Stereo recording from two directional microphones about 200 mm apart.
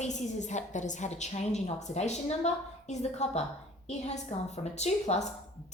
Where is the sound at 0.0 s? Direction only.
35° left (ahead or behind).